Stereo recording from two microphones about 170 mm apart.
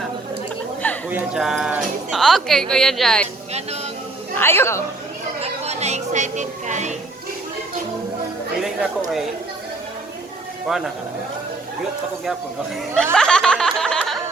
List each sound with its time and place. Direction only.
1.1 s speech: 5° right (ahead or behind)
4.4 s speech: 15° left (ahead or behind)
5.4 s speech: 40° right (ahead or behind)
10.7 s speech: centre (ahead or behind)
13.1 s a sound: 5° left (ahead or behind)